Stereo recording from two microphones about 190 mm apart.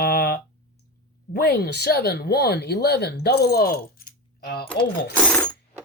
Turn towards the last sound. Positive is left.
turn(degrees=5)  # may be behind; listen again after turning